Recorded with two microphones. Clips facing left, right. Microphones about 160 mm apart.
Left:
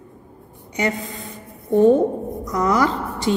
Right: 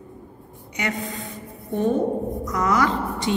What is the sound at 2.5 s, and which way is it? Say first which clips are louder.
Speech: left 3 dB; 35° left (ahead or behind).